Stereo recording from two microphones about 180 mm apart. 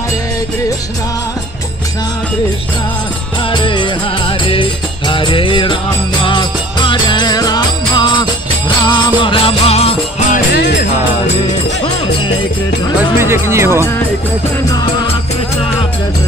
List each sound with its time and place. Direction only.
3.5 s music: 25° left (ahead or behind)
10.3 s music: 65° left (ahead or behind)
13.2 s speech: 15° right (ahead or behind)